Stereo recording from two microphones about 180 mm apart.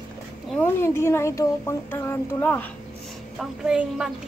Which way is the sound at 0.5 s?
10° left (ahead or behind).